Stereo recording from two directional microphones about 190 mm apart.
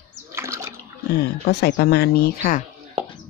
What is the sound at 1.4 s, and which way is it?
Speech, 60° left (ahead or behind).